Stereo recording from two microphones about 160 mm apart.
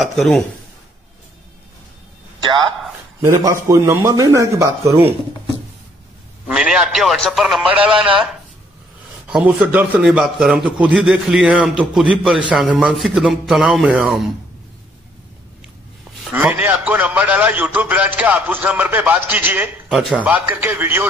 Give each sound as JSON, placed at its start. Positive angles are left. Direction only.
{"t": 0.0, "sound": "a man's voice", "side_deg": 0}
{"t": 2.4, "sound": "a man's voice", "side_deg": -30}
{"t": 6.4, "sound": "a man's voice", "side_deg": -5}
{"t": 16.3, "sound": "a man's voice", "side_deg": -15}